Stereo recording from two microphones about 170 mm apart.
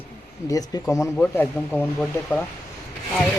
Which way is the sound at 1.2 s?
10° left (ahead or behind).